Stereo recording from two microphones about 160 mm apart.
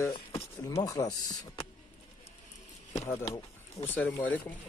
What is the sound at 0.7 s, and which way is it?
Speech, 20° left (ahead or behind).